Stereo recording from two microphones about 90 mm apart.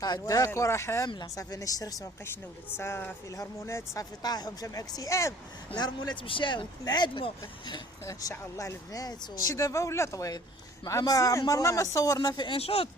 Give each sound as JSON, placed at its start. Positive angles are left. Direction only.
{"t": 0.0, "sound": "speech", "side_deg": 45}
{"t": 1.0, "sound": "speech", "side_deg": 50}
{"t": 2.7, "sound": "a woman's voice", "side_deg": 30}
{"t": 4.2, "sound": "speech", "side_deg": 45}
{"t": 5.7, "sound": "speech", "side_deg": 50}
{"t": 6.2, "sound": "speech", "side_deg": 70}
{"t": 8.0, "sound": "speech", "side_deg": 35}
{"t": 12.5, "sound": "speech", "side_deg": 90}